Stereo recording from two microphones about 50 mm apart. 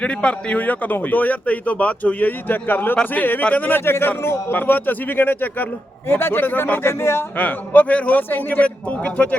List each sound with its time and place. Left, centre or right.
0.0 s a man's voice: left
4.5 s a man's voice: left
6.8 s speech: left
7.3 s a man's voice: left